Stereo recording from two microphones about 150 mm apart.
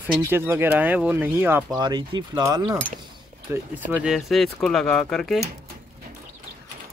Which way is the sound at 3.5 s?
10° right (ahead or behind).